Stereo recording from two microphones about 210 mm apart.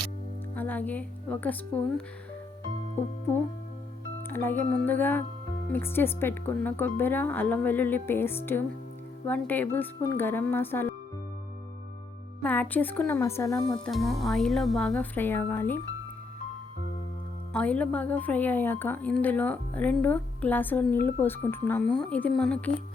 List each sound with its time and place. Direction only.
0.5 s speech: 10° left (ahead or behind)
4.3 s speech: 10° left (ahead or behind)
12.4 s speech: 10° left (ahead or behind)
13.7 s speech: centre (ahead or behind)
17.5 s speech: 5° left (ahead or behind)